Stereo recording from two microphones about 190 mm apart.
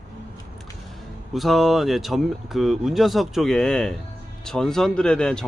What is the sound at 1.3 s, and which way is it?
Speech, centre (ahead or behind).